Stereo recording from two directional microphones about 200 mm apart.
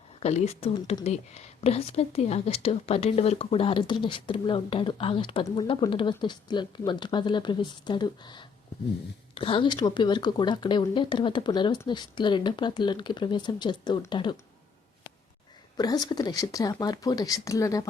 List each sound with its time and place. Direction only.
0.2 s speech: 30° left (ahead or behind)
15.8 s speech: 20° left (ahead or behind)